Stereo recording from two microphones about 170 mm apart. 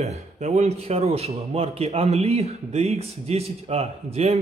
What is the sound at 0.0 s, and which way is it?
A man's voice, 40° right (ahead or behind).